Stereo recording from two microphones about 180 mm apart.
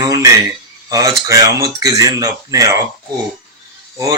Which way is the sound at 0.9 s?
20° right (ahead or behind).